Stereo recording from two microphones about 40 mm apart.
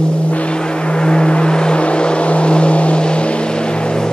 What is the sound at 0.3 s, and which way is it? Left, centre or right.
Vehicle, left.